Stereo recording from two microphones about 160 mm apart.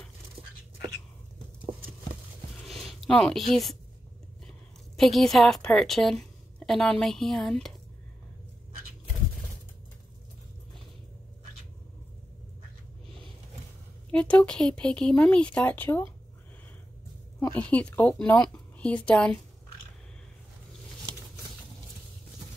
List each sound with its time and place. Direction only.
2.6 s a sound: centre (ahead or behind)
4.9 s a woman's voice: centre (ahead or behind)
14.1 s speech: 5° left (ahead or behind)
17.4 s speech: 20° left (ahead or behind)
17.6 s speech: 10° left (ahead or behind)